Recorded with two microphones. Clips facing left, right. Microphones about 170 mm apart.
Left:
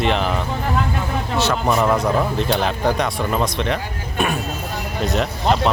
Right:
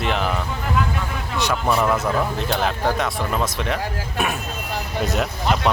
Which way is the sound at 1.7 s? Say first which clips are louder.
Left 3 dB; 10° left (ahead or behind).